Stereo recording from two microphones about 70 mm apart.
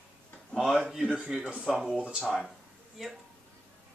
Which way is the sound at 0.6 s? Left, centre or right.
Centre.